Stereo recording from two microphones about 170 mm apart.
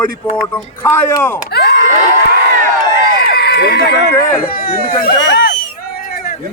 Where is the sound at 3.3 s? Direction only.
70° left (ahead or behind).